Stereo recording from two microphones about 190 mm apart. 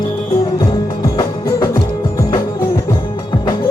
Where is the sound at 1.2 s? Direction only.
15° left (ahead or behind).